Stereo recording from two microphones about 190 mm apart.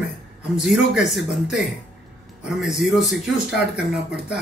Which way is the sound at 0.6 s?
Centre (ahead or behind).